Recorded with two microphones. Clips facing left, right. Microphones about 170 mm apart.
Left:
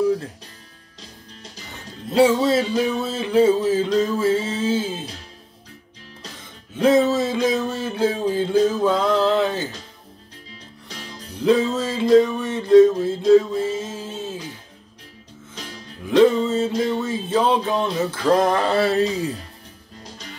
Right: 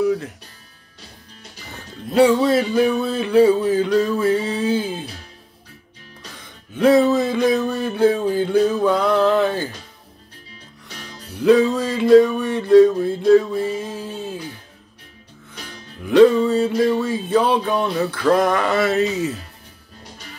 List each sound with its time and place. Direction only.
2.0 s music: 25° left (ahead or behind)
7.2 s music: 20° left (ahead or behind)
11.4 s music: 25° left (ahead or behind)
16.1 s music: 20° left (ahead or behind)